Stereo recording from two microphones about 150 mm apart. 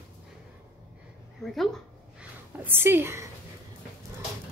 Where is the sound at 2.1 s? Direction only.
15° right (ahead or behind).